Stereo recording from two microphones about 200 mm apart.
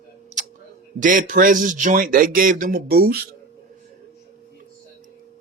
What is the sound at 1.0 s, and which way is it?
Speech, 40° right (ahead or behind).